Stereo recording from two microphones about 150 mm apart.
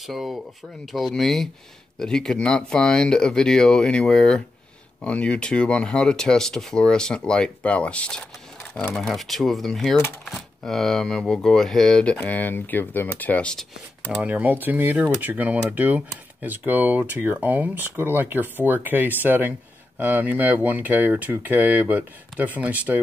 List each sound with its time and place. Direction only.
0.0 s speech: centre (ahead or behind)
14.1 s speech: 10° right (ahead or behind)